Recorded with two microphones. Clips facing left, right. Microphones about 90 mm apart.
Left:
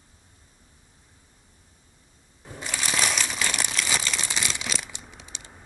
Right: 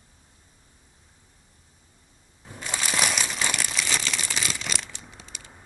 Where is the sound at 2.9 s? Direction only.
5° right (ahead or behind).